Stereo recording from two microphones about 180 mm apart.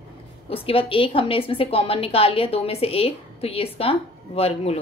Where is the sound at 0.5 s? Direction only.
30° left (ahead or behind).